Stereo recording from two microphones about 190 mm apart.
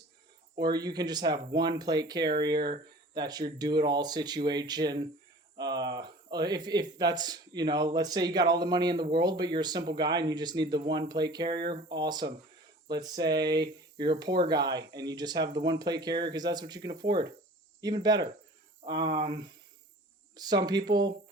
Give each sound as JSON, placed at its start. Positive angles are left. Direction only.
{"t": 0.5, "sound": "speech", "side_deg": -20}